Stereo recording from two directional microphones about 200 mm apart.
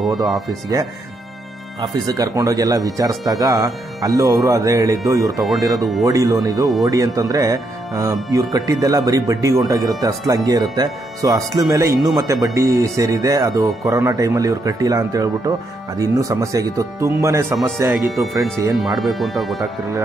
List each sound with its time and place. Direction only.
0.5 s speech: 15° right (ahead or behind)
17.9 s speech: centre (ahead or behind)
18.6 s speech: 15° right (ahead or behind)
18.9 s speech: centre (ahead or behind)